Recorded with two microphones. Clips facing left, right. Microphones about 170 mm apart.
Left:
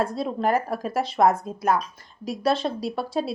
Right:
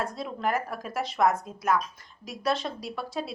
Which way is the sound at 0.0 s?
30° left (ahead or behind).